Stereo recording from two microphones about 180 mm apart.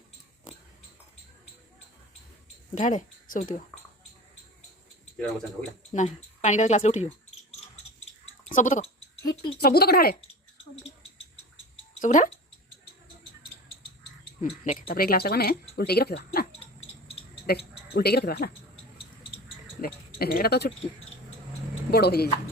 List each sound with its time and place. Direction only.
2.7 s speech: 45° left (ahead or behind)
5.9 s speech: 40° left (ahead or behind)
8.5 s speech: 45° left (ahead or behind)
9.6 s speech: 60° left (ahead or behind)
11.9 s speech: 45° left (ahead or behind)
14.6 s speech: 50° left (ahead or behind)
16.8 s a sound: 35° left (ahead or behind)
17.4 s speech: 60° left (ahead or behind)
18.9 s a sound: 30° left (ahead or behind)
19.8 s speech: 60° left (ahead or behind)
21.8 s speech: 60° left (ahead or behind)